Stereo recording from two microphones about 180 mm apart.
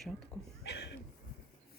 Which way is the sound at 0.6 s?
70° left (ahead or behind).